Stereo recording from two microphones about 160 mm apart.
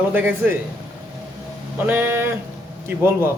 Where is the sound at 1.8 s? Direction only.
10° right (ahead or behind).